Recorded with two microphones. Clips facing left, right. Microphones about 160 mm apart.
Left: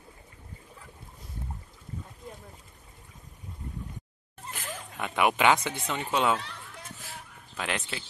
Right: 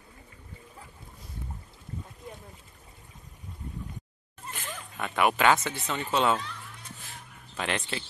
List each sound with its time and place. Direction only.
4.5 s a sound: centre (ahead or behind)
4.9 s speech: 15° left (ahead or behind)
7.5 s speech: 5° left (ahead or behind)